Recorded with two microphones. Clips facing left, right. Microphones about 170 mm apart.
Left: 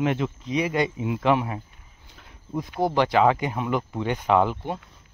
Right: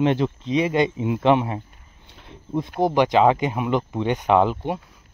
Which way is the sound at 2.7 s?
20° right (ahead or behind).